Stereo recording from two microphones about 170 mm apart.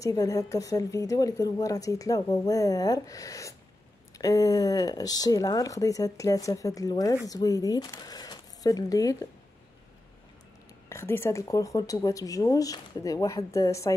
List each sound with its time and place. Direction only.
0.0 s a woman's voice: 20° left (ahead or behind)
10.9 s a woman's voice: 15° left (ahead or behind)